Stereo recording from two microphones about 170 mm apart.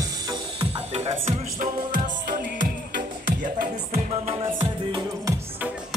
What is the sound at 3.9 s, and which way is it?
Music, 40° right (ahead or behind).